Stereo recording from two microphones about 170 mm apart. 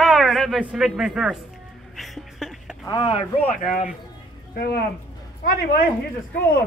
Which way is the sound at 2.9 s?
25° left (ahead or behind).